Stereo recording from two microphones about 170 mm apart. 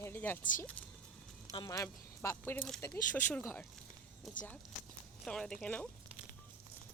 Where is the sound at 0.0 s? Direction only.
10° left (ahead or behind).